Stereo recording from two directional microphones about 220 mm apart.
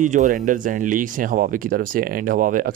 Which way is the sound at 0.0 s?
35° right (ahead or behind).